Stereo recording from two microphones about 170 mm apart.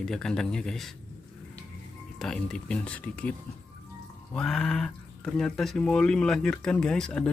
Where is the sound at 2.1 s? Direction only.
5° left (ahead or behind).